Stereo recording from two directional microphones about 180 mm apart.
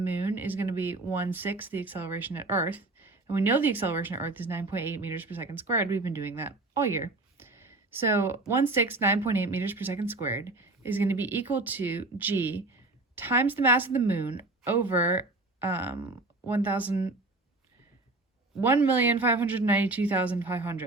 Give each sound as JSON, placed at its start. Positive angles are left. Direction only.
{"t": 0.0, "sound": "speech", "side_deg": -10}
{"t": 18.6, "sound": "speech", "side_deg": -10}